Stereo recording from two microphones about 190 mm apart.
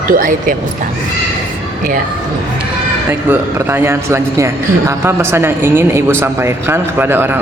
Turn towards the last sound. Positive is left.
turn(degrees=-10)  # may be behind; listen again after turning